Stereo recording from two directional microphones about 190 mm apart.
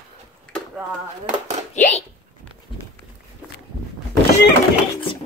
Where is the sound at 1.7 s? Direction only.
40° left (ahead or behind).